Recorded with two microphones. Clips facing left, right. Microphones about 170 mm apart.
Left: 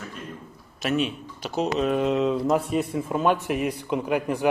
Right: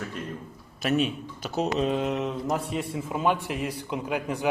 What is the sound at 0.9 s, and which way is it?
Speech, 40° right (ahead or behind).